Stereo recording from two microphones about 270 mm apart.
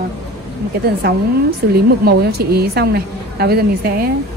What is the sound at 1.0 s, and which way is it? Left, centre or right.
A woman's voice, right.